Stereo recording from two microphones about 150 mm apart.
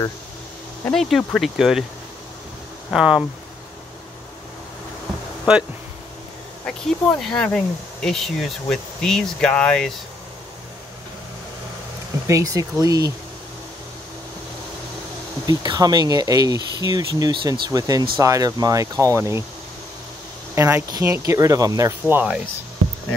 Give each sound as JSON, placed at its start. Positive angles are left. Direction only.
{"t": 0.9, "sound": "speech", "side_deg": 0}
{"t": 2.9, "sound": "speech", "side_deg": -5}
{"t": 6.6, "sound": "speech", "side_deg": 5}
{"t": 12.3, "sound": "speech", "side_deg": -20}
{"t": 15.4, "sound": "speech", "side_deg": -25}
{"t": 20.5, "sound": "speech", "side_deg": -20}